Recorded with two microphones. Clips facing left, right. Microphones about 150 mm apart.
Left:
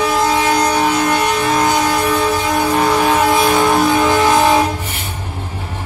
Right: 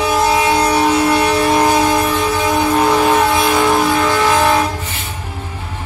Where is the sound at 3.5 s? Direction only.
20° left (ahead or behind).